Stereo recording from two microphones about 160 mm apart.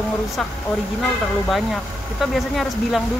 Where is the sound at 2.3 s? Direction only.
Centre (ahead or behind).